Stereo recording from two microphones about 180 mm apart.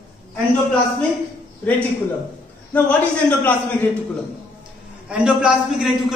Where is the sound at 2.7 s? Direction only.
5° left (ahead or behind).